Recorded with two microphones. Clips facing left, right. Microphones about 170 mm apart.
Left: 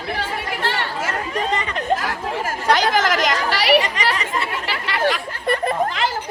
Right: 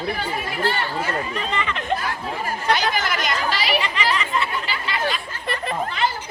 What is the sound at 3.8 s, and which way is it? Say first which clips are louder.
Chatter: left 1 dB; 45° left (ahead or behind).